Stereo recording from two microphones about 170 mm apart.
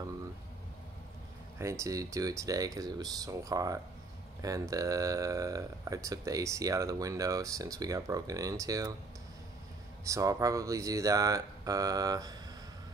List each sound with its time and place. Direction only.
1.6 s speech: 15° right (ahead or behind)
10.0 s speech: 20° right (ahead or behind)